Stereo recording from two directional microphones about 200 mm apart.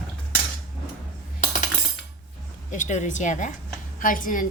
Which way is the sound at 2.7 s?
40° left (ahead or behind).